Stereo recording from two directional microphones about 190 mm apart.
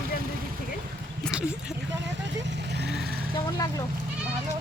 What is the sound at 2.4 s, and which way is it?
Vehicle, 65° right (ahead or behind).